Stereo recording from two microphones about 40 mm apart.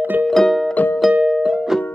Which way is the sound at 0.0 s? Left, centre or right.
Right.